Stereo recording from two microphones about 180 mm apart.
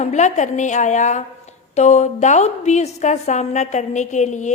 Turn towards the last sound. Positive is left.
turn(degrees=40)  # may be behind; listen again after turning